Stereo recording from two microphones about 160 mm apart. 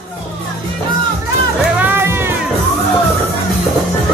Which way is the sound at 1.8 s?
15° right (ahead or behind).